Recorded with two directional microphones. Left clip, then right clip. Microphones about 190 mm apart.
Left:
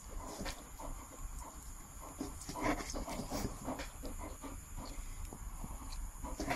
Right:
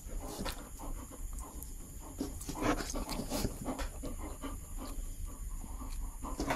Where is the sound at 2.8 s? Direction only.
40° right (ahead or behind).